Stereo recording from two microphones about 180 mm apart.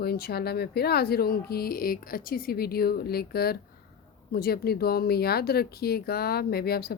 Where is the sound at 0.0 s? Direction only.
60° left (ahead or behind).